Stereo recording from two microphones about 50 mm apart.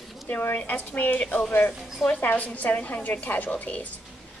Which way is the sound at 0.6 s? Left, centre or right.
Left.